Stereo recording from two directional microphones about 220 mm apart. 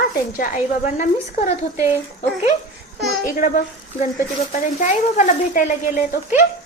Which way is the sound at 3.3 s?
40° left (ahead or behind).